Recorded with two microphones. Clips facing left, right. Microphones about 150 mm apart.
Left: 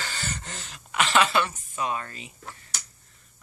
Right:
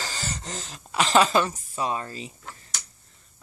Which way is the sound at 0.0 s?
35° right (ahead or behind).